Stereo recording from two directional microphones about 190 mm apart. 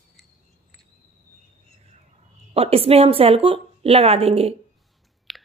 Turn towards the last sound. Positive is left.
turn(degrees=0)  # may be behind; listen again after turning